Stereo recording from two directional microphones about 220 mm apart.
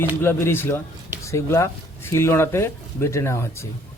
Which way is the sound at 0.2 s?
10° left (ahead or behind).